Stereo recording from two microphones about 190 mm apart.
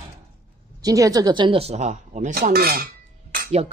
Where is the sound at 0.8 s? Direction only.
20° right (ahead or behind); by 2.8 s 55° right (ahead or behind).